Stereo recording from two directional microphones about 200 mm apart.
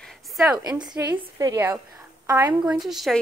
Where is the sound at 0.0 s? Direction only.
Centre (ahead or behind).